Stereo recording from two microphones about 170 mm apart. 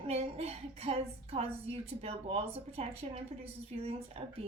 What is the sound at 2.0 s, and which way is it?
A woman's voice, 35° right (ahead or behind).